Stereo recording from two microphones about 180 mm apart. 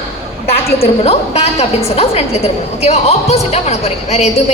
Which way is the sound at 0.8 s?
35° left (ahead or behind).